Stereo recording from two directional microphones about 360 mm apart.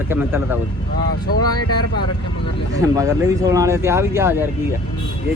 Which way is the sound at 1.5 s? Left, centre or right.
Left.